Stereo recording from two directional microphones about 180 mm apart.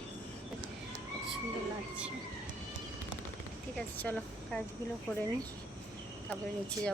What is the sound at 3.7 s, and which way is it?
Speech, 5° left (ahead or behind).